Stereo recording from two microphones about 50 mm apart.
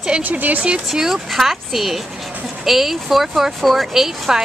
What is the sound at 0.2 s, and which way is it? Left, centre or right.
Speech, right.